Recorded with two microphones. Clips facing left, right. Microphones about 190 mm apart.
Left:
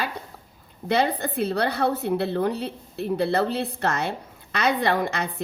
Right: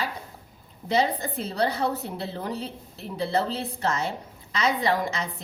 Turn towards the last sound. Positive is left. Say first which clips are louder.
# left 2 dB
turn(degrees=60)  # may be behind; listen again after turning